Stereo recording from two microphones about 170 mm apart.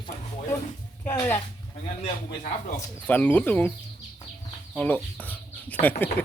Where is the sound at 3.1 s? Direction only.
10° left (ahead or behind).